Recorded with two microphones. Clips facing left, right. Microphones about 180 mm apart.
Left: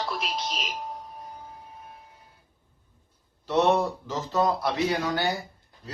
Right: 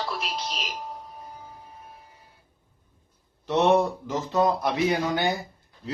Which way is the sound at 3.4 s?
15° right (ahead or behind).